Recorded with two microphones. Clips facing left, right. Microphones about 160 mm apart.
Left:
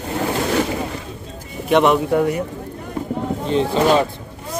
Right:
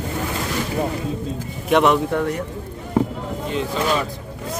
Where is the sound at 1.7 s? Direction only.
Centre (ahead or behind).